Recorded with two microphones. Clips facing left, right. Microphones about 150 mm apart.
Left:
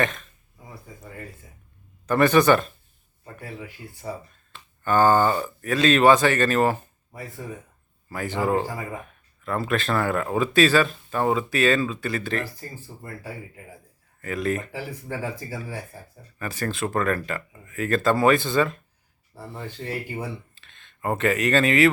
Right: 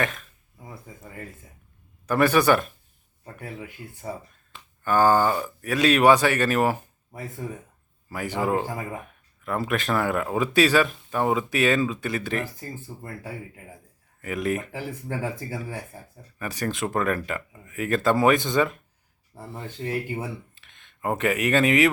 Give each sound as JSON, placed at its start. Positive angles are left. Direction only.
{"t": 0.0, "sound": "speech", "side_deg": -5}
{"t": 2.0, "sound": "speech", "side_deg": -10}
{"t": 4.5, "sound": "speech", "side_deg": -10}
{"t": 8.1, "sound": "speech", "side_deg": -10}
{"t": 14.2, "sound": "speech", "side_deg": -15}